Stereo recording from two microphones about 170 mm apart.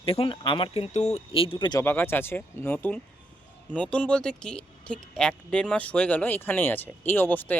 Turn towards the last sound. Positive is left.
turn(degrees=10)  # may be behind; listen again after turning